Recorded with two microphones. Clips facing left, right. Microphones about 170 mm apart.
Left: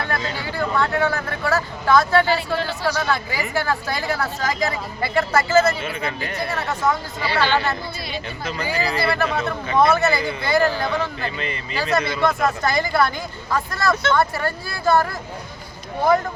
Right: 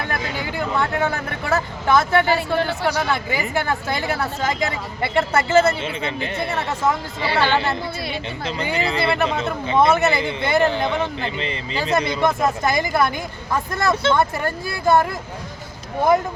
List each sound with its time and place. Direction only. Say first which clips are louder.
0.0 s speech: even; 20° right (ahead or behind)